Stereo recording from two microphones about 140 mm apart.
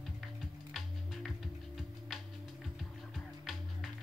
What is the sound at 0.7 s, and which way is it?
Music, centre (ahead or behind).